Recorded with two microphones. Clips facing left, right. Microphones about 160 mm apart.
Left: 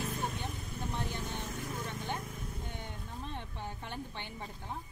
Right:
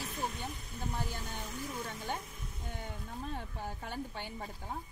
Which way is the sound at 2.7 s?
5° right (ahead or behind).